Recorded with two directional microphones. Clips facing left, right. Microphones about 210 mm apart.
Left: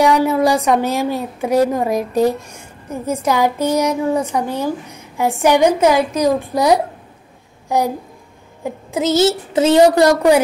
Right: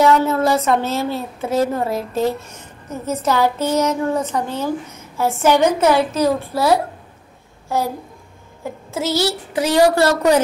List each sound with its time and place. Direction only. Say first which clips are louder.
0.0 s a woman's voice: left 1 dB; 15° left (ahead or behind)